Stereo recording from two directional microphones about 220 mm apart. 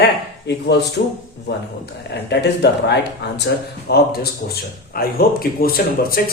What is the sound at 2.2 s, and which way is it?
Speech, 50° left (ahead or behind).